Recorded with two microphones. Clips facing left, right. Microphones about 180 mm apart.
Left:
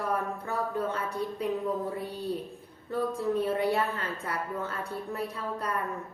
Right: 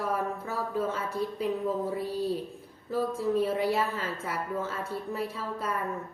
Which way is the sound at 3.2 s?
5° right (ahead or behind).